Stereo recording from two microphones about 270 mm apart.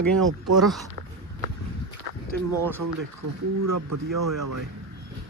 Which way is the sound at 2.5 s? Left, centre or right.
Centre.